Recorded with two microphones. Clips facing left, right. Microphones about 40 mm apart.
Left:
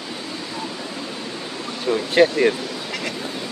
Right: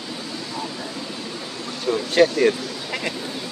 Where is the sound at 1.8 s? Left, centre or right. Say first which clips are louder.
Left 1 dB; centre.